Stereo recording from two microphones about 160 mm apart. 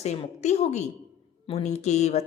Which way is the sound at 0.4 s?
45° left (ahead or behind).